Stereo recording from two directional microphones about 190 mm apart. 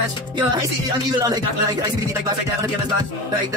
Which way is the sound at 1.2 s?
20° right (ahead or behind).